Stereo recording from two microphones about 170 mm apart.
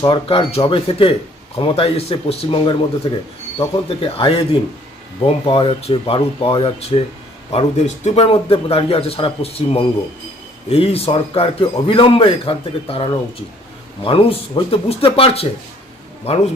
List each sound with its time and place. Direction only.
0.0 s a man's voice: 30° left (ahead or behind)
8.2 s a man's voice: 30° left (ahead or behind)